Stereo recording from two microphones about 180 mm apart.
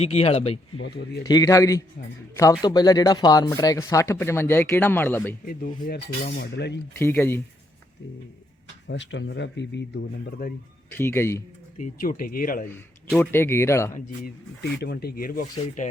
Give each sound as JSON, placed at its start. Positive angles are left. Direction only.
{"t": 0.0, "sound": "speech", "side_deg": 35}
{"t": 0.8, "sound": "cutlery", "side_deg": 65}
{"t": 1.2, "sound": "a man's voice", "side_deg": 20}
{"t": 5.5, "sound": "cutlery", "side_deg": 50}
{"t": 7.0, "sound": "speech", "side_deg": 10}
{"t": 8.9, "sound": "speech", "side_deg": 90}
{"t": 10.4, "sound": "cutlery", "side_deg": 60}
{"t": 10.9, "sound": "speech", "side_deg": 15}
{"t": 11.8, "sound": "speech", "side_deg": 50}
{"t": 13.1, "sound": "speech", "side_deg": 10}
{"t": 14.8, "sound": "cutlery", "side_deg": 60}